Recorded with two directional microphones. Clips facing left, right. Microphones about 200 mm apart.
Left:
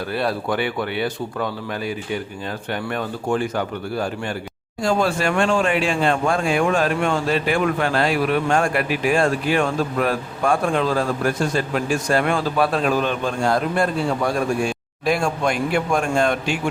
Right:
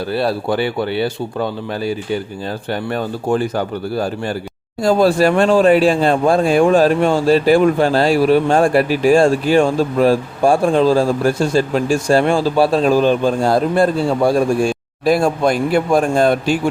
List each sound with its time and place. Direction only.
0.1 s speech: 30° right (ahead or behind)